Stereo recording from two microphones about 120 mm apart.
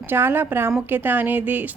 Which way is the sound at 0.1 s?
20° right (ahead or behind).